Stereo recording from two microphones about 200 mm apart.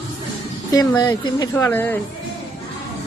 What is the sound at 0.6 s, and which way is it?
Speech, 20° left (ahead or behind).